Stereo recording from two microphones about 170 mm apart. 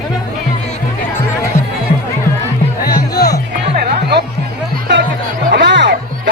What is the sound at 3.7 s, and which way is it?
Music, 75° right (ahead or behind).